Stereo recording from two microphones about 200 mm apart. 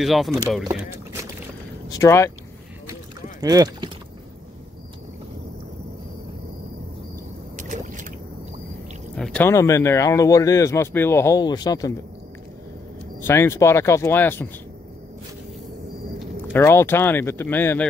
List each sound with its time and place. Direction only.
0.0 s speech: centre (ahead or behind)
0.7 s speech: 15° right (ahead or behind)
1.9 s speech: 15° left (ahead or behind)
2.9 s a sound: 20° right (ahead or behind)
7.5 s boat: 40° right (ahead or behind)
9.1 s speech: 5° left (ahead or behind)
13.2 s speech: 15° left (ahead or behind)
16.5 s speech: 10° left (ahead or behind)